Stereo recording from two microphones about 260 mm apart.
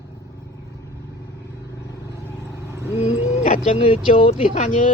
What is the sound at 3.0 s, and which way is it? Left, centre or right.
Speech, left.